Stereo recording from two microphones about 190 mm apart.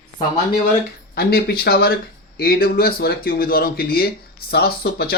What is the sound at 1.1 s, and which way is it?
Speech, 55° left (ahead or behind).